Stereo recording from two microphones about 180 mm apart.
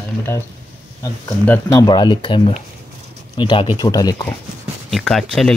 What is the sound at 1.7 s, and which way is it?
Speech, 20° left (ahead or behind).